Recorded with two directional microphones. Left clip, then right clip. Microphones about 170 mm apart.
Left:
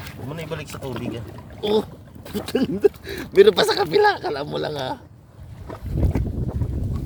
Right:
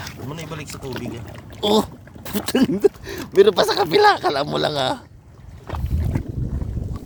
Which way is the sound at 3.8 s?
25° right (ahead or behind).